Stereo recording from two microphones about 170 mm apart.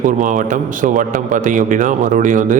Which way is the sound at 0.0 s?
50° right (ahead or behind).